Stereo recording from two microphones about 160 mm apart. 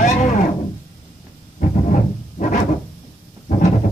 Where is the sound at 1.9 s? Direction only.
50° left (ahead or behind).